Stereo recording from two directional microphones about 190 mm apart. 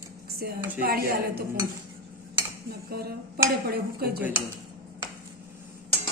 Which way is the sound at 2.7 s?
55° right (ahead or behind).